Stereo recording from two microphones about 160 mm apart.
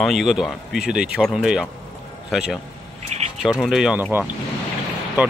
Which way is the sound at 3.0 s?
45° right (ahead or behind).